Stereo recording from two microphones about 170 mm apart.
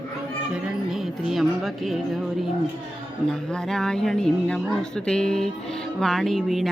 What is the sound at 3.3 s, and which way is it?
A woman's voice, 5° left (ahead or behind).